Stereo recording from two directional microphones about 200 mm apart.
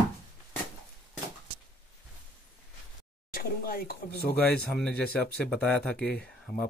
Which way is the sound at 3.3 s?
45° left (ahead or behind).